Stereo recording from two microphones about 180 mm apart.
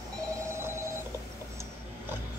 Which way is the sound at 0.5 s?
15° right (ahead or behind).